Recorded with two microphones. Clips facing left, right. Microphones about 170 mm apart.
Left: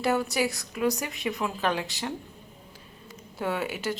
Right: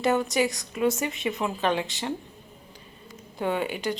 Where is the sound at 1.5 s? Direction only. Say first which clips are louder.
Right 3 dB; 15° right (ahead or behind).